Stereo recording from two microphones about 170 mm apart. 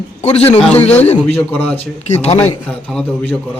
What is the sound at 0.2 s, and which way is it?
Speech, 40° left (ahead or behind).